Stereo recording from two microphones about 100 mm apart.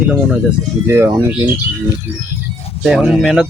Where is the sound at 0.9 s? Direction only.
25° right (ahead or behind).